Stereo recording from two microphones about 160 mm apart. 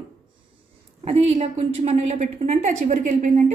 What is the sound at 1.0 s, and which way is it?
A woman's voice, 40° right (ahead or behind).